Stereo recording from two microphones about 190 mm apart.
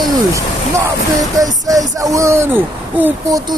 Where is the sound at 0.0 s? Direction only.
15° right (ahead or behind).